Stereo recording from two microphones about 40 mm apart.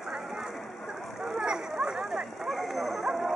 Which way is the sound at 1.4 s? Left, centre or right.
Centre.